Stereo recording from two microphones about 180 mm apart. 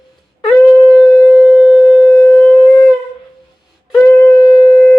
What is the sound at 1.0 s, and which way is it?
Shofar, 5° left (ahead or behind).